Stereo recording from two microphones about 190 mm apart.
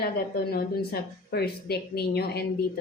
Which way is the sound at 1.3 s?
55° left (ahead or behind).